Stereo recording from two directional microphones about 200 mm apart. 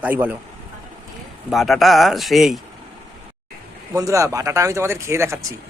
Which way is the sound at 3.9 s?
15° right (ahead or behind).